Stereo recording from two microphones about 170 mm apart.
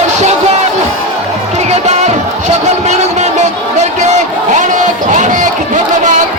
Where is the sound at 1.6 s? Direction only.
40° right (ahead or behind).